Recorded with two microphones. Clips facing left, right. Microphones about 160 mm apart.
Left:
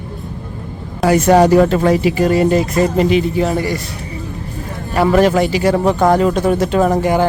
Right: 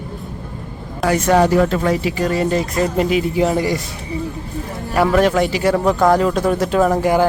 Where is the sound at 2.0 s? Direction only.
10° left (ahead or behind).